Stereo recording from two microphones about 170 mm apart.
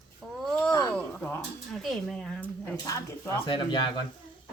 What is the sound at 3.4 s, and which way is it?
Speech, 30° left (ahead or behind).